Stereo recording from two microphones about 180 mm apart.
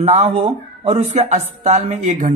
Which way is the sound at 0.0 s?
35° right (ahead or behind).